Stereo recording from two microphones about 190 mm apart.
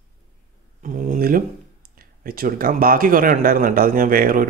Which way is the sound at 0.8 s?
40° right (ahead or behind).